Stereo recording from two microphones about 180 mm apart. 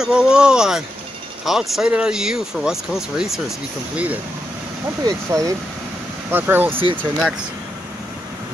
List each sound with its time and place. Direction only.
0.0 s speech: 5° right (ahead or behind)
5.0 s speech: 20° right (ahead or behind)
6.7 s speech: 30° right (ahead or behind)